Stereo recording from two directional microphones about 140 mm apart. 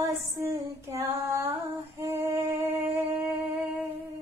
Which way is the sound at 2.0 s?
20° right (ahead or behind).